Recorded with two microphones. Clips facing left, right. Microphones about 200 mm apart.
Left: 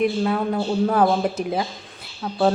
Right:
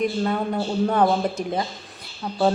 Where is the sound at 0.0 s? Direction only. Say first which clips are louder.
Left 2 dB; centre (ahead or behind).